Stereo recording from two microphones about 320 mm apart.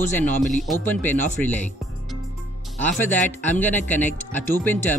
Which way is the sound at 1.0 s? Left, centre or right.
Centre.